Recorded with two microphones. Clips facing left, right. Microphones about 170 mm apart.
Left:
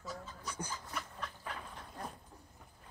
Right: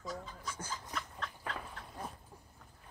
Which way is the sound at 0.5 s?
15° left (ahead or behind).